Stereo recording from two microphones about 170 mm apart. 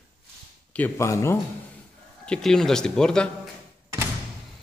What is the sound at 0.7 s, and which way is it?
Speech, 15° left (ahead or behind).